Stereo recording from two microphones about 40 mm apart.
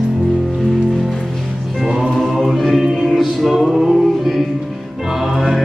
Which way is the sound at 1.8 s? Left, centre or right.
Centre.